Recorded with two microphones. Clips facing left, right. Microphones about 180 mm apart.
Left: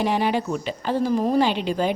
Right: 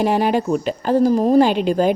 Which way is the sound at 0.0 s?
45° right (ahead or behind).